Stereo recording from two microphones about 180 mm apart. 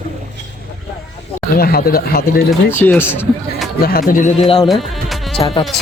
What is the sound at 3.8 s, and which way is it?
Speech, 55° left (ahead or behind).